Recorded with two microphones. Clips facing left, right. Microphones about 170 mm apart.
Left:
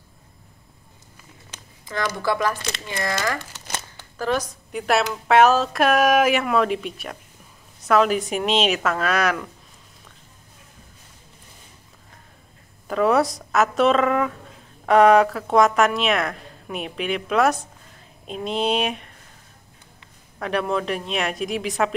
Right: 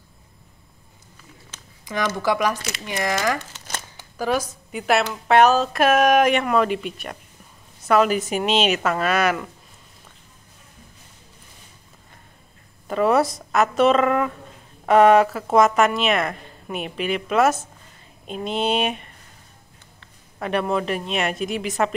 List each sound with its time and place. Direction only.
2.2 s a woman's voice: 15° right (ahead or behind)
12.8 s a woman's voice: centre (ahead or behind)
20.3 s a woman's voice: centre (ahead or behind)